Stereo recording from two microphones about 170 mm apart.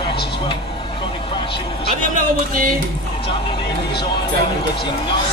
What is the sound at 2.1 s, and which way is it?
Music, 55° right (ahead or behind).